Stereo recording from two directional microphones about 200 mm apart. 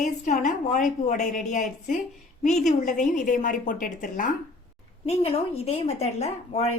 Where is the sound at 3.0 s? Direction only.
40° left (ahead or behind).